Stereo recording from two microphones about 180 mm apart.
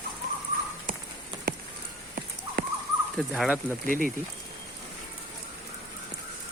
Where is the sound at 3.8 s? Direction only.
50° right (ahead or behind).